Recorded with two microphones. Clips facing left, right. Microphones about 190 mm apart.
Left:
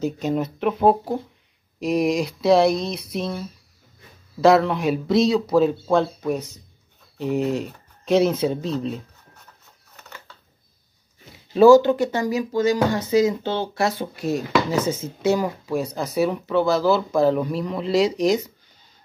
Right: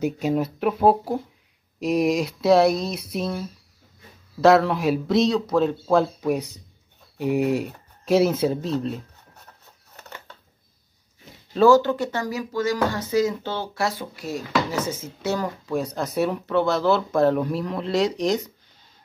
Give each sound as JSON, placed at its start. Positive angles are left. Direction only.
{"t": 0.0, "sound": "speech", "side_deg": -5}
{"t": 11.5, "sound": "speech", "side_deg": 10}